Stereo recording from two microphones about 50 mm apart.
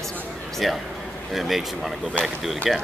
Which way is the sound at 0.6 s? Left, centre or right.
Centre.